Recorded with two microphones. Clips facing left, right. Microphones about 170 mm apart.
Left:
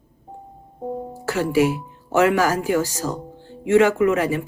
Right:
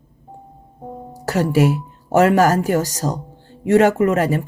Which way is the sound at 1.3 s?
45° right (ahead or behind).